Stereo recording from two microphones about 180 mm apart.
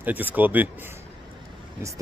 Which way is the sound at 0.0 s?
10° right (ahead or behind).